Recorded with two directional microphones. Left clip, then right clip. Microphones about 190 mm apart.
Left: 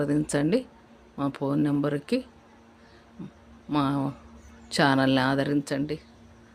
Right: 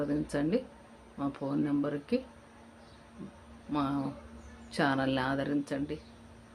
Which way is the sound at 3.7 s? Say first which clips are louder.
Left 6 dB; 60° left (ahead or behind).